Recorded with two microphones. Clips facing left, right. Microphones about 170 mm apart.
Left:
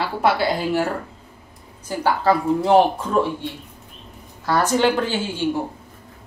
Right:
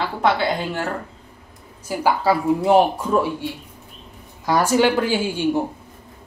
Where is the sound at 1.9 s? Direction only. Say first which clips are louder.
Even; 5° right (ahead or behind).